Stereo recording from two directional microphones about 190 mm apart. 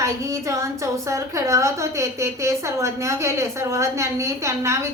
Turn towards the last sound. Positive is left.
turn(degrees=-15)  # may be behind; listen again after turning